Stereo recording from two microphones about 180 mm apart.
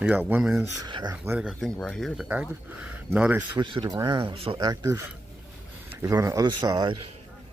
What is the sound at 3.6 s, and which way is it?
Speech, 25° right (ahead or behind).